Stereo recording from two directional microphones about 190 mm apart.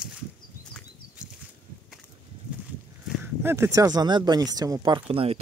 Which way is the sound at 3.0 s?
10° right (ahead or behind).